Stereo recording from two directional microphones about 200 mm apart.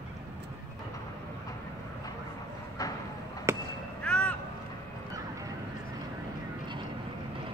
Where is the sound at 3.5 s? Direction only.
15° right (ahead or behind).